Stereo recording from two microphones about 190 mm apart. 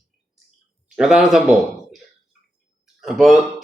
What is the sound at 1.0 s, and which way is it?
Speech, centre (ahead or behind).